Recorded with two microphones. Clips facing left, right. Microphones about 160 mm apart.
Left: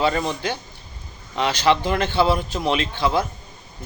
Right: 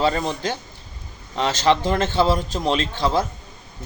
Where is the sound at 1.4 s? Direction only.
40° right (ahead or behind).